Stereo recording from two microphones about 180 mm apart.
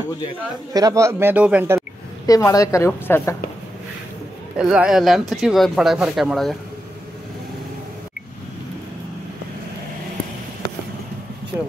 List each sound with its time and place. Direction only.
0.7 s speech: 20° right (ahead or behind)
2.2 s speech: 20° left (ahead or behind)
4.6 s speech: 5° right (ahead or behind)